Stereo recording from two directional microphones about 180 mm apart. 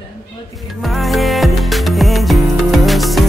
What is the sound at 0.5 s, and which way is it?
Music, centre (ahead or behind).